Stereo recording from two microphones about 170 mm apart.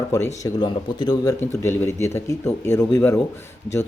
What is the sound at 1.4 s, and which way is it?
Speech, 15° left (ahead or behind).